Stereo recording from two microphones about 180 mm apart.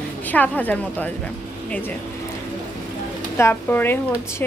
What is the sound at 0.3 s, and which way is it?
Speech, 10° left (ahead or behind).